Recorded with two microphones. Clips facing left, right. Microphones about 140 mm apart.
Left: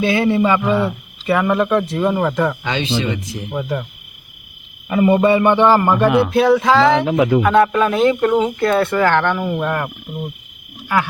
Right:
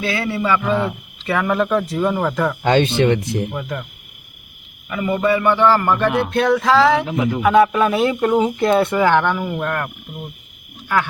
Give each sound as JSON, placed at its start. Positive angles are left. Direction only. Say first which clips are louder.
{"t": 0.0, "sound": "speech", "louder": "left 6 dB", "side_deg": 20}
{"t": 2.6, "sound": "speech", "louder": "right 6 dB", "side_deg": -50}
{"t": 3.5, "sound": "speech", "louder": "left 4 dB", "side_deg": 5}
{"t": 4.9, "sound": "a man's voice", "louder": "left 5 dB", "side_deg": 30}
{"t": 6.3, "sound": "speech", "louder": "left 2 dB", "side_deg": 5}
{"t": 7.0, "sound": "speech", "louder": "left 6 dB", "side_deg": 90}
{"t": 7.4, "sound": "speech", "louder": "even", "side_deg": -5}
{"t": 10.9, "sound": "speech", "louder": "left 1 dB", "side_deg": 5}